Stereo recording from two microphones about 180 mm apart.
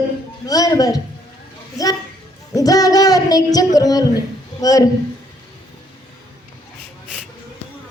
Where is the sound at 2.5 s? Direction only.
20° left (ahead or behind).